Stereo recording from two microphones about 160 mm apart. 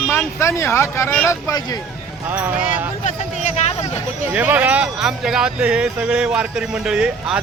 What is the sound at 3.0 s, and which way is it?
Speech, 45° left (ahead or behind).